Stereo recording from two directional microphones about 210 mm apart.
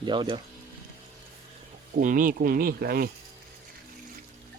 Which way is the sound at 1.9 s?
40° right (ahead or behind).